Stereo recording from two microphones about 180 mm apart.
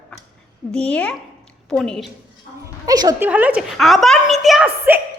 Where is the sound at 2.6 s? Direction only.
20° right (ahead or behind).